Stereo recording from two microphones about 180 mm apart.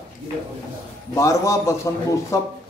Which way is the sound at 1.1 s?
15° left (ahead or behind).